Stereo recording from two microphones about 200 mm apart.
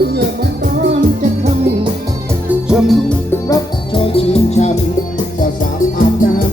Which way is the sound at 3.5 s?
25° left (ahead or behind).